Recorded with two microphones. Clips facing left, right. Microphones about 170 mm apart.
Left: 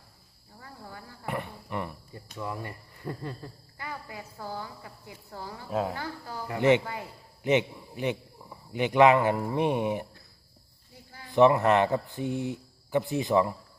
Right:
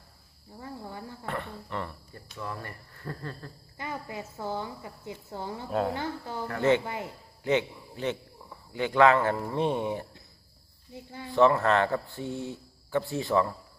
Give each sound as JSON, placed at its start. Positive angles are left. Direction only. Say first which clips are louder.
{"t": 0.6, "sound": "a sound", "louder": "right 5 dB", "side_deg": -20}
{"t": 1.2, "sound": "cricket", "louder": "left 3 dB", "side_deg": 15}
{"t": 3.8, "sound": "speech", "louder": "right 4 dB", "side_deg": -20}
{"t": 6.5, "sound": "a man's voice", "louder": "left 2 dB", "side_deg": 20}
{"t": 6.8, "sound": "speech", "louder": "right 2 dB", "side_deg": -20}
{"t": 7.4, "sound": "a man's voice", "louder": "left 2 dB", "side_deg": 15}
{"t": 10.9, "sound": "a sound", "louder": "right 8 dB", "side_deg": -20}
{"t": 11.3, "sound": "a man's voice", "louder": "left 2 dB", "side_deg": 15}